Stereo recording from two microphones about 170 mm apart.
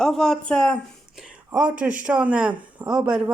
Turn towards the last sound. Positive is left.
turn(degrees=-5)  # may be behind; listen again after turning